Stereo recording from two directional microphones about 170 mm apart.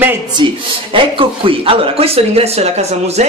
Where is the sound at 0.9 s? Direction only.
30° right (ahead or behind).